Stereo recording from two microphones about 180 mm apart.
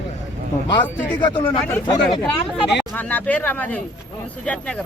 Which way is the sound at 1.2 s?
25° left (ahead or behind).